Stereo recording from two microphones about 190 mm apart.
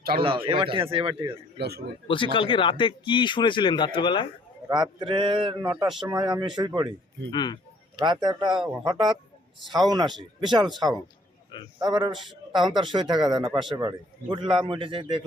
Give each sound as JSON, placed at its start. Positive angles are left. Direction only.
{"t": 0.2, "sound": "a man's voice", "side_deg": -25}
{"t": 1.5, "sound": "a man's voice", "side_deg": -60}
{"t": 2.0, "sound": "speech", "side_deg": 25}
{"t": 4.7, "sound": "a man's voice", "side_deg": -25}
{"t": 7.3, "sound": "speech", "side_deg": 20}
{"t": 7.9, "sound": "a man's voice", "side_deg": -25}
{"t": 12.1, "sound": "speech", "side_deg": 0}
{"t": 12.7, "sound": "a man's voice", "side_deg": -25}